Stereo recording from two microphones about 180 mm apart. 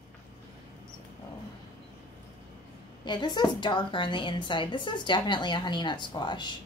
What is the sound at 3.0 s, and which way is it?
A woman's voice, 25° left (ahead or behind).